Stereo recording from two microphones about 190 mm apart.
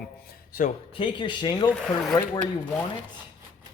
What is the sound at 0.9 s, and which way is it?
Speech, 25° left (ahead or behind).